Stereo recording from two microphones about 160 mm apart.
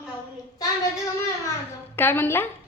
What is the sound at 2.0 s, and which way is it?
Speech, 15° left (ahead or behind).